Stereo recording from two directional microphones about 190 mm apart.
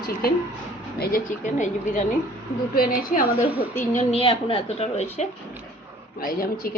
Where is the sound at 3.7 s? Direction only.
10° left (ahead or behind).